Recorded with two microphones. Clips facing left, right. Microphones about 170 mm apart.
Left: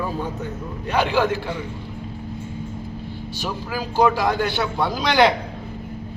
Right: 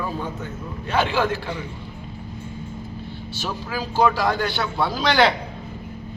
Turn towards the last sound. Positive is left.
turn(degrees=15)  # may be behind; listen again after turning